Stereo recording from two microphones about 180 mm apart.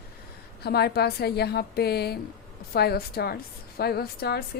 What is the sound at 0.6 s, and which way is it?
A woman's voice, 60° left (ahead or behind).